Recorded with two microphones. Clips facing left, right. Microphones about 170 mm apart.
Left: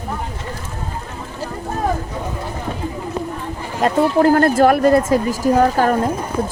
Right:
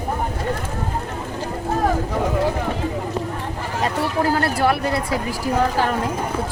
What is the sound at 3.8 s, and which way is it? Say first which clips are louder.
Speech: left 8 dB; 50° left (ahead or behind).